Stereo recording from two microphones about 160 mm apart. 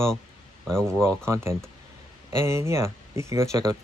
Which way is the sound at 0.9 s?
5° left (ahead or behind).